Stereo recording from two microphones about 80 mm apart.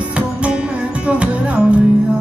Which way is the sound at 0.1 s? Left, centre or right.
Centre.